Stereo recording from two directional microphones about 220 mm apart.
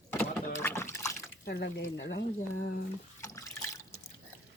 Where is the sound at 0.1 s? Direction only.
10° left (ahead or behind).